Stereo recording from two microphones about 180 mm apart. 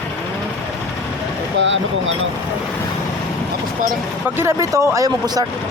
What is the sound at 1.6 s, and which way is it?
Speech, 90° right.